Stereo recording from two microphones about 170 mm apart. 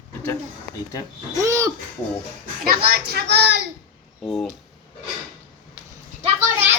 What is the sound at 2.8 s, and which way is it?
Speech, 65° right (ahead or behind).